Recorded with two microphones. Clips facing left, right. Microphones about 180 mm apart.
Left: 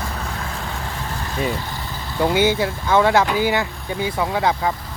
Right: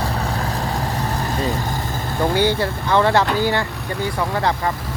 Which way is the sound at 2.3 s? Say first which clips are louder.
Left 1 dB; 10° left (ahead or behind).